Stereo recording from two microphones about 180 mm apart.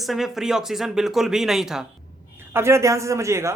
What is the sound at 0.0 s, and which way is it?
Speech, centre (ahead or behind).